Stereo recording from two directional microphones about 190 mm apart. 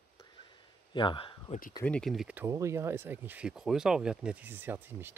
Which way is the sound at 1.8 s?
5° left (ahead or behind).